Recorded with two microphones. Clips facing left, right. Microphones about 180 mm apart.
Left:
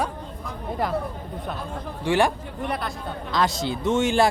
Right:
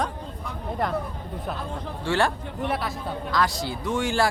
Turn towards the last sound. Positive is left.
turn(degrees=20)  # may be behind; listen again after turning